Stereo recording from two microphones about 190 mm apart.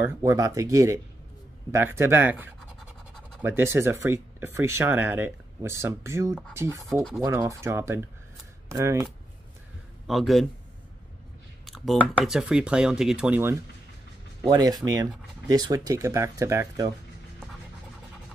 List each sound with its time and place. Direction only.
0.0 s speech: 15° right (ahead or behind)
6.9 s speech: centre (ahead or behind)
7.2 s speech: 15° right (ahead or behind)
10.0 s speech: centre (ahead or behind)
11.6 s speech: centre (ahead or behind); by 16.9 s 15° right (ahead or behind)